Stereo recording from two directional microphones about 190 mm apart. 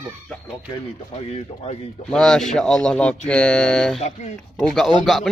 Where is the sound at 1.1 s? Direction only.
35° left (ahead or behind).